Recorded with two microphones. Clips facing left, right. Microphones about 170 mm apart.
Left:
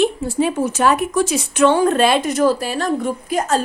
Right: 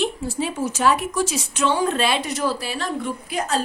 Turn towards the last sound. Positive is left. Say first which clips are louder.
# left 5 dB
turn(degrees=45)  # may be behind; listen again after turning